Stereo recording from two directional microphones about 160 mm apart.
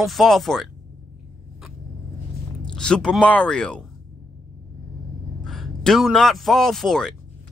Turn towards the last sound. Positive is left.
turn(degrees=5)  # may be behind; listen again after turning